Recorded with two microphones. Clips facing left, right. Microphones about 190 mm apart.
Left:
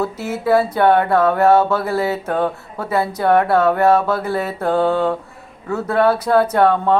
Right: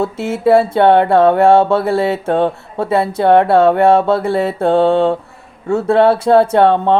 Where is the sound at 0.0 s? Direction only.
25° right (ahead or behind).